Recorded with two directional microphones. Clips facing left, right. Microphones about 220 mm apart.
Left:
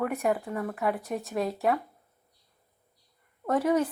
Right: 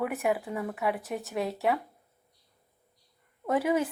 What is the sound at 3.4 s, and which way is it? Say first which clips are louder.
Speech: left 2 dB; 5° right (ahead or behind).